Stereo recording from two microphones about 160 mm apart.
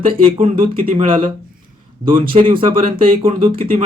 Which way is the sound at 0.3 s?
35° right (ahead or behind).